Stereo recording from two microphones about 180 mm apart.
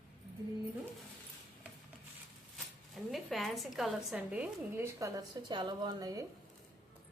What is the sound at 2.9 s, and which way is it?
Speech, centre (ahead or behind).